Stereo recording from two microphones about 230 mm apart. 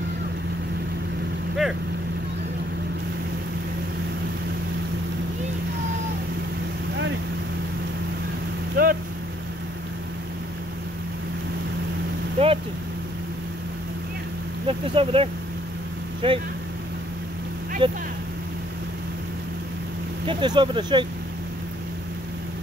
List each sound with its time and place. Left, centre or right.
8.8 s boat: right
12.4 s vehicle: right
14.7 s speech: right
17.8 s a sound: right
20.2 s speech: right